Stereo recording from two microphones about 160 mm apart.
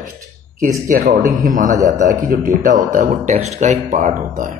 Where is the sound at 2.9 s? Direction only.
45° right (ahead or behind).